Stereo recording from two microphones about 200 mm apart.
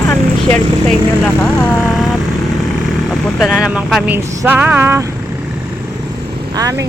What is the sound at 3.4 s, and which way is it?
Speech, centre (ahead or behind).